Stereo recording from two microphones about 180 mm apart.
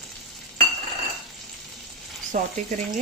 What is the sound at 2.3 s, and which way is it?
Speech, 45° right (ahead or behind).